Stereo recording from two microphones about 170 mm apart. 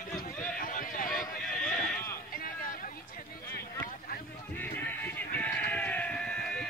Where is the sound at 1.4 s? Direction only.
5° left (ahead or behind).